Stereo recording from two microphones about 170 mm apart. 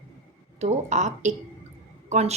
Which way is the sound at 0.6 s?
45° right (ahead or behind).